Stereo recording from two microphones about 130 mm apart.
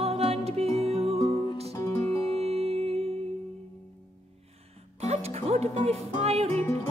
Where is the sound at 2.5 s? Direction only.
50° right (ahead or behind).